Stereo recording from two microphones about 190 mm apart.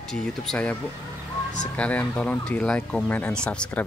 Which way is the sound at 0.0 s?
5° left (ahead or behind).